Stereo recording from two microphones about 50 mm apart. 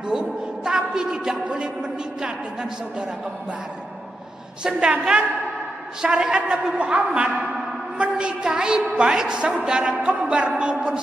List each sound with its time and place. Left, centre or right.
0.1 s a woman's voice: centre
1.4 s a woman's voice: right
4.6 s a woman's voice: centre
6.0 s a woman's voice: centre
9.9 s a woman's voice: right